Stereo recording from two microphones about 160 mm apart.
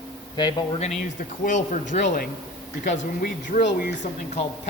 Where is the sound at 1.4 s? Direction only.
50° left (ahead or behind).